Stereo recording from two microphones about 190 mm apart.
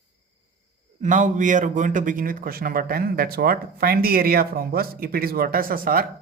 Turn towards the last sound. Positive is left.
turn(degrees=-50)  # may be behind; listen again after turning